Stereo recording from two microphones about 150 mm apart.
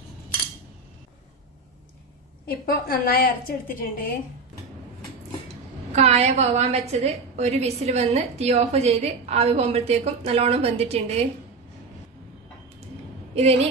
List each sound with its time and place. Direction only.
2.4 s a woman's voice: 80° left
5.9 s a woman's voice: 45° right (ahead or behind)
13.3 s a woman's voice: 45° right (ahead or behind)